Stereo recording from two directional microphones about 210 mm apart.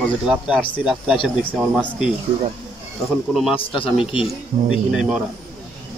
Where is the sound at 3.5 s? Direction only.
25° left (ahead or behind).